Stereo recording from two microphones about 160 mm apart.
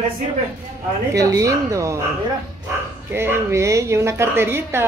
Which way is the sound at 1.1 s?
20° right (ahead or behind).